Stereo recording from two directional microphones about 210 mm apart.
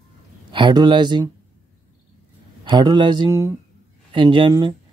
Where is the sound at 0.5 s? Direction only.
20° right (ahead or behind).